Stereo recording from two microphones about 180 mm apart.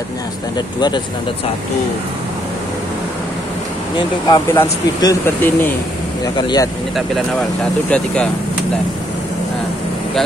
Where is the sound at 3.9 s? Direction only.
25° left (ahead or behind).